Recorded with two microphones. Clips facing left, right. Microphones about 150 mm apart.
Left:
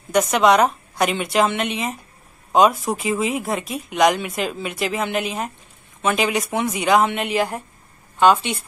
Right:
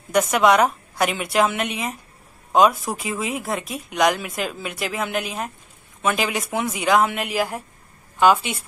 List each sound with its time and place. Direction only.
0.3 s a woman's voice: centre (ahead or behind)